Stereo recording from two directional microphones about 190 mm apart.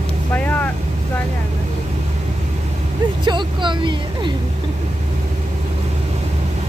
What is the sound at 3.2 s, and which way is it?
Speech, 25° right (ahead or behind).